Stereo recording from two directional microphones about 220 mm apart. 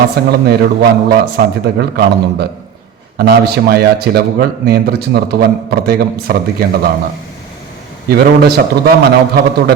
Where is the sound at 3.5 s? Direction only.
45° right (ahead or behind).